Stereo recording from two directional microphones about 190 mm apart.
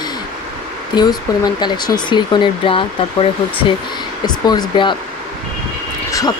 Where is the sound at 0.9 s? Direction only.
20° left (ahead or behind).